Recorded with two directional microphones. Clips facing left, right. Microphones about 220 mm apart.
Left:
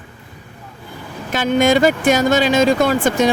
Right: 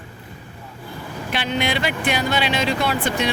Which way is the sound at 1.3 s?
45° left (ahead or behind).